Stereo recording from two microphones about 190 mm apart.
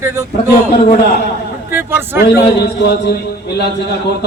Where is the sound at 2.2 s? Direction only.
60° left (ahead or behind).